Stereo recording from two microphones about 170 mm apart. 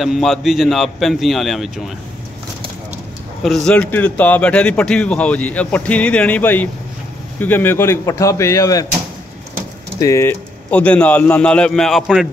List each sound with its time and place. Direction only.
0.0 s a man's voice: centre (ahead or behind)
3.4 s a man's voice: 5° left (ahead or behind); by 8.8 s 20° left (ahead or behind)
9.9 s a man's voice: 20° left (ahead or behind); by 12.3 s centre (ahead or behind)